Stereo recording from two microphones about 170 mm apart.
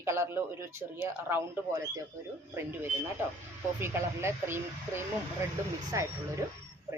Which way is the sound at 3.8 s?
15° right (ahead or behind).